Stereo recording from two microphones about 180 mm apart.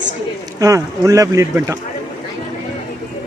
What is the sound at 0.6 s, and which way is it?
Speech, 20° right (ahead or behind).